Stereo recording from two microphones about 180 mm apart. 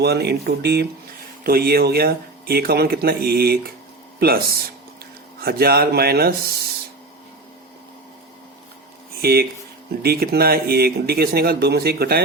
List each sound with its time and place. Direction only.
0.0 s speech: 65° right (ahead or behind)
9.2 s speech: 60° right (ahead or behind)